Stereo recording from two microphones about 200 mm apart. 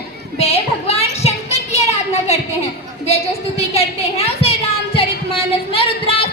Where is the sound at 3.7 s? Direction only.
30° left (ahead or behind).